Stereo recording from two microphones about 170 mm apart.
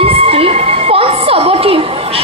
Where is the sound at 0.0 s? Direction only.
35° right (ahead or behind).